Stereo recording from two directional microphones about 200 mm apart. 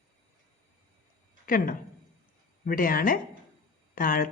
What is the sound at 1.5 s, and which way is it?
A woman's voice, 45° left (ahead or behind).